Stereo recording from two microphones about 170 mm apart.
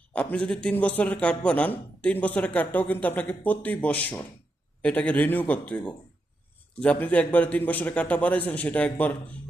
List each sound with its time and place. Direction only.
0.1 s a man's voice: 5° left (ahead or behind)